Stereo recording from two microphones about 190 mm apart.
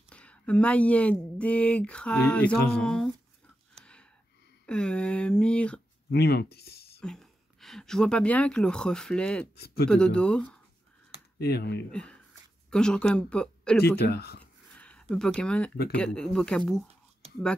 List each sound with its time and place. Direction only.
0.1 s speech: 5° left (ahead or behind)
3.8 s gasp: 5° left (ahead or behind)
4.6 s speech: 5° left (ahead or behind)
6.1 s speech: 55° left (ahead or behind)
7.0 s speech: 5° left (ahead or behind)
11.3 s speech: 55° left (ahead or behind)
11.9 s speech: 5° left (ahead or behind)
13.9 s speech: 60° left (ahead or behind)
14.4 s a sound: 5° left (ahead or behind)
15.9 s speech: 5° left (ahead or behind)